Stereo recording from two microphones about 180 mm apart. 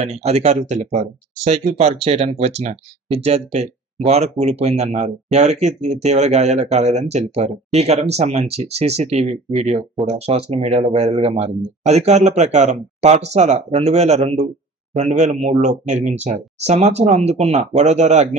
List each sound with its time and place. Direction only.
0.0 s speech: 35° right (ahead or behind)